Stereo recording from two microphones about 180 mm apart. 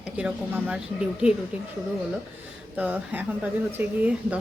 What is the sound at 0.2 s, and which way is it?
Speech, 5° right (ahead or behind).